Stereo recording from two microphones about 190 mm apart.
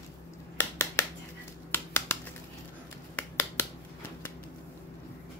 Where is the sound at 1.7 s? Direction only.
10° left (ahead or behind).